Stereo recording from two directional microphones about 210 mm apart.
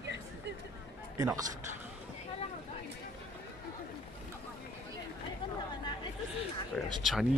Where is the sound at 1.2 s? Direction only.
15° right (ahead or behind).